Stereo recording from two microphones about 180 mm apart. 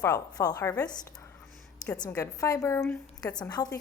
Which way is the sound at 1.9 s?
20° left (ahead or behind).